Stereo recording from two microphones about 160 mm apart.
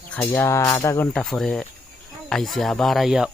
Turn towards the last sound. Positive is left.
turn(degrees=0)  # may be behind; listen again after turning